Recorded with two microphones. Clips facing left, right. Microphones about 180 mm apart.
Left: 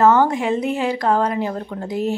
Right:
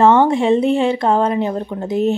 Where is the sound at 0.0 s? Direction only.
25° right (ahead or behind).